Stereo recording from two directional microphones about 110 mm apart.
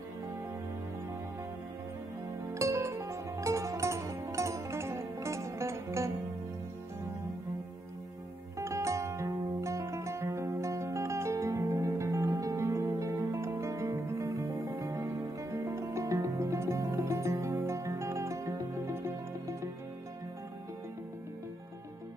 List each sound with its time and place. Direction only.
2.5 s music: 25° right (ahead or behind)
8.5 s zither: 25° right (ahead or behind)